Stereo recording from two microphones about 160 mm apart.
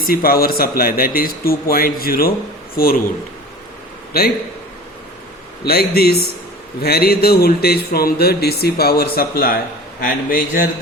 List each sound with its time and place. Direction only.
0.0 s a man's voice: 65° left (ahead or behind)
4.1 s speech: 70° left (ahead or behind)
5.6 s a man's voice: 75° left (ahead or behind)